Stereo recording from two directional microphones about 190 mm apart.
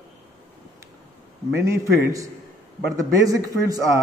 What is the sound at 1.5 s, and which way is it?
A man's voice, 15° right (ahead or behind).